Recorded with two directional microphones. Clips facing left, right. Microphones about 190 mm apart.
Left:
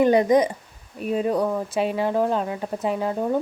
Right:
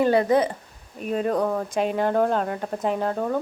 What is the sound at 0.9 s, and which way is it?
A woman's voice, 5° left (ahead or behind).